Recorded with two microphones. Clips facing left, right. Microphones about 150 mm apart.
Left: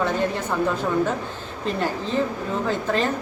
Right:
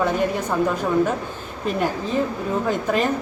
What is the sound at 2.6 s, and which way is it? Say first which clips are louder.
Speech: right 1 dB; 15° right (ahead or behind).